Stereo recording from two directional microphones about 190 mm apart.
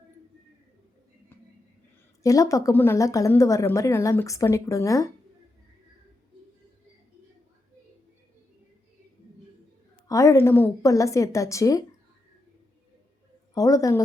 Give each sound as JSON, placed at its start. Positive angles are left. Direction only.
{"t": 2.2, "sound": "speech", "side_deg": 15}
{"t": 10.1, "sound": "speech", "side_deg": 15}
{"t": 13.5, "sound": "speech", "side_deg": 15}